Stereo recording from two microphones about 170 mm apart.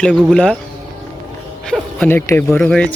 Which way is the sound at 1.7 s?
5° left (ahead or behind).